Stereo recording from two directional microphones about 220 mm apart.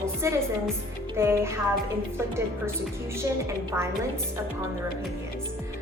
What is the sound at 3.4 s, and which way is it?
Speech, 10° right (ahead or behind).